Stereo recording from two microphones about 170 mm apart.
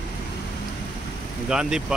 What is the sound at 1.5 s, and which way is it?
Speech, 5° right (ahead or behind).